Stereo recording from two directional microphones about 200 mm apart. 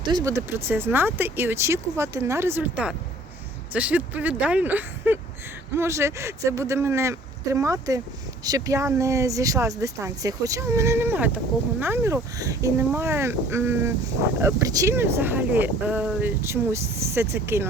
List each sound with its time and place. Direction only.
0.0 s speech: 20° right (ahead or behind)